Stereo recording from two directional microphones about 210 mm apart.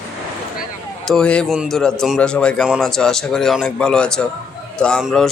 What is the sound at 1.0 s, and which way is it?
A man's voice, 5° left (ahead or behind).